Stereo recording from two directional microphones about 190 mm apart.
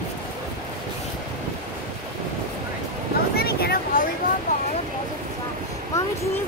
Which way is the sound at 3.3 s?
55° left (ahead or behind).